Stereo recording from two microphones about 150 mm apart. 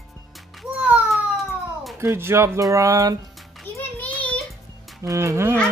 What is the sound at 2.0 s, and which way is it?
Speech, 15° right (ahead or behind).